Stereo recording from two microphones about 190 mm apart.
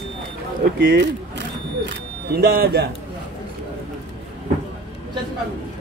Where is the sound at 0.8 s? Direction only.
65° right (ahead or behind).